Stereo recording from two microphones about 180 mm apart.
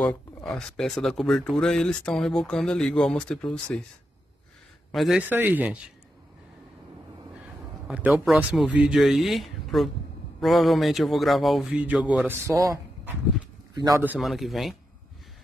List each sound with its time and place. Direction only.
0.0 s speech: centre (ahead or behind)
4.9 s a man's voice: centre (ahead or behind)
7.9 s a man's voice: 5° right (ahead or behind); by 14.0 s 20° right (ahead or behind)
14.0 s speech: 5° right (ahead or behind)